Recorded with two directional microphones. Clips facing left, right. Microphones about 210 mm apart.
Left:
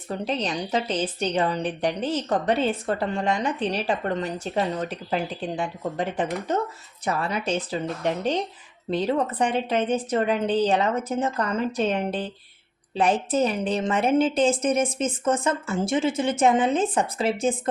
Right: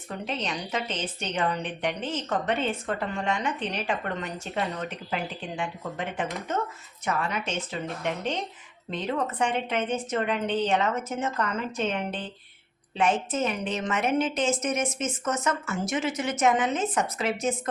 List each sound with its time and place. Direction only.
0.1 s a woman's voice: 35° left (ahead or behind)